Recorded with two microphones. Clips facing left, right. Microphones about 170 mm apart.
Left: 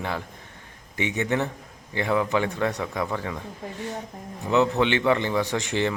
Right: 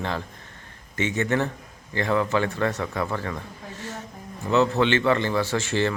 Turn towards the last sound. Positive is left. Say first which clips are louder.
# right 1 dB
turn(degrees=15)  # may be behind; listen again after turning